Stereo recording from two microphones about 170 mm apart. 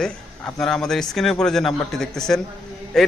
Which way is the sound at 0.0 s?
5° left (ahead or behind).